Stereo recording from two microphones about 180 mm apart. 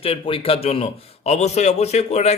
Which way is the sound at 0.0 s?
30° left (ahead or behind).